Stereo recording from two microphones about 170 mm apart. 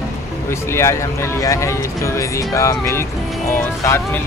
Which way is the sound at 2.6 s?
15° left (ahead or behind).